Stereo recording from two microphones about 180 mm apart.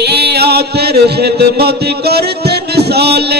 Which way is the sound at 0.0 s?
65° right (ahead or behind).